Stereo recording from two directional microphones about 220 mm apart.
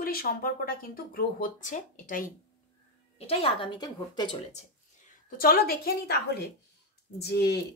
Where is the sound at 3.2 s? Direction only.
25° left (ahead or behind).